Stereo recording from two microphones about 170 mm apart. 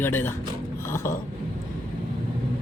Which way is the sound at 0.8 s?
15° left (ahead or behind).